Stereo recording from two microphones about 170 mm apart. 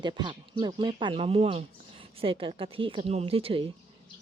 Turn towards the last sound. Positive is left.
turn(degrees=-35)  # may be behind; listen again after turning